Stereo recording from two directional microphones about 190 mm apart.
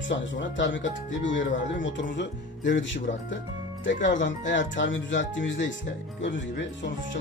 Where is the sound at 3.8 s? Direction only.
70° left (ahead or behind).